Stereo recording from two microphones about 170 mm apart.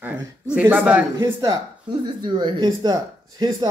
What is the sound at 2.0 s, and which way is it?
Speech, 25° right (ahead or behind).